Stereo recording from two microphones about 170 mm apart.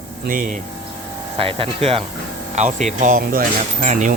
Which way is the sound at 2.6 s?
45° right (ahead or behind).